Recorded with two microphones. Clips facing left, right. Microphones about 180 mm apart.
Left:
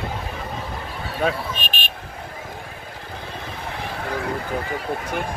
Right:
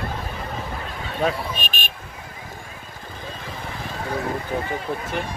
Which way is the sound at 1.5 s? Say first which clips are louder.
Even; 45° right (ahead or behind).